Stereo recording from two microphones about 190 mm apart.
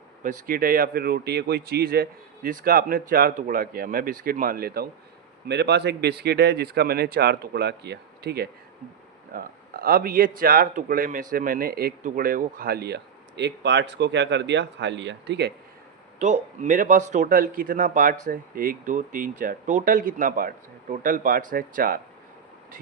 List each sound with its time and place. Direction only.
0.2 s speech: 45° right (ahead or behind)
5.5 s a man's voice: 65° right (ahead or behind)
16.1 s speech: 40° right (ahead or behind)